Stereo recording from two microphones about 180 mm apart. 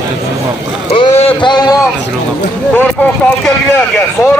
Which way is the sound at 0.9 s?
30° left (ahead or behind).